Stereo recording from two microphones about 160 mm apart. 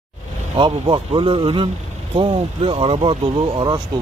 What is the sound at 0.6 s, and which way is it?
Speech, 30° right (ahead or behind).